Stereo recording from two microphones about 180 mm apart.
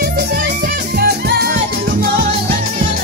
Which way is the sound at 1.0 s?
60° right (ahead or behind).